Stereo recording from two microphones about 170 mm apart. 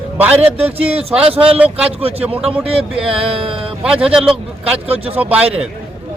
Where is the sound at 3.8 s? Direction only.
5° right (ahead or behind).